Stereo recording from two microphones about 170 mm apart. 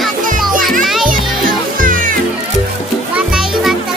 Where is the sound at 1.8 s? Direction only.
55° right (ahead or behind).